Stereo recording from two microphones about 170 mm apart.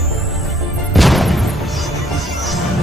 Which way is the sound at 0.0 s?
Centre (ahead or behind).